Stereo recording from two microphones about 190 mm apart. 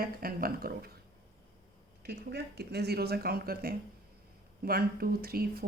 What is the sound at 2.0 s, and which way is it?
Speech, 60° right (ahead or behind).